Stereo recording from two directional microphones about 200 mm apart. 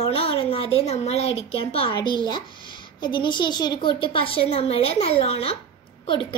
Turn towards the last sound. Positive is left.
turn(degrees=25)  # may be behind; listen again after turning